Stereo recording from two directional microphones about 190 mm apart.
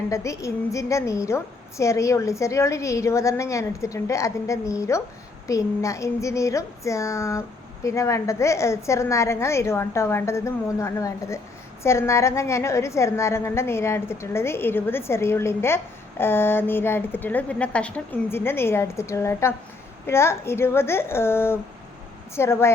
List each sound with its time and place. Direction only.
0.1 s a woman's voice: 15° left (ahead or behind)